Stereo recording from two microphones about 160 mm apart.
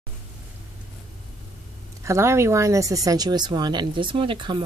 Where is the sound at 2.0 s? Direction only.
15° right (ahead or behind).